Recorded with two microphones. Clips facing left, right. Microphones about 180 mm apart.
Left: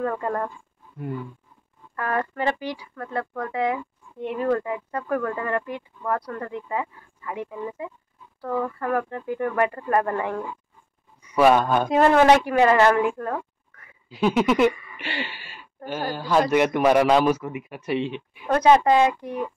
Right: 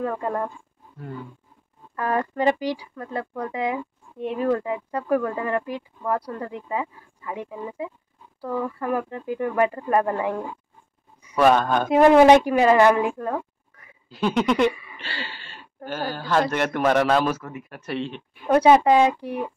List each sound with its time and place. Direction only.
0.0 s speech: 10° right (ahead or behind)
2.0 s speech: 20° right (ahead or behind)
8.4 s speech: 10° right (ahead or behind)
11.3 s speech: 10° left (ahead or behind)
11.9 s speech: 15° right (ahead or behind)
14.1 s a sound: 5° left (ahead or behind)
15.0 s speech: 15° left (ahead or behind)
18.5 s speech: 10° right (ahead or behind)